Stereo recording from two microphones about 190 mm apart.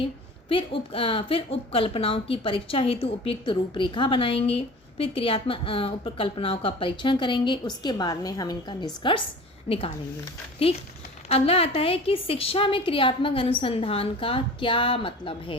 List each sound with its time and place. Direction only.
0.0 s a woman's voice: 30° left (ahead or behind)